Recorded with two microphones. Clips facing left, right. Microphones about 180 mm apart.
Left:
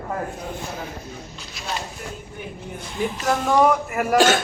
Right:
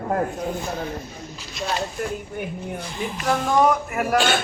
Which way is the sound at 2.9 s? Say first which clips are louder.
Left 2 dB; centre (ahead or behind).